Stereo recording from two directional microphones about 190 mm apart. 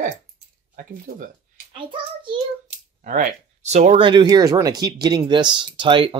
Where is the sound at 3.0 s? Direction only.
40° right (ahead or behind).